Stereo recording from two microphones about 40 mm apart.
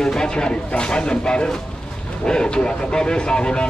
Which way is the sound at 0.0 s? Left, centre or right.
Centre.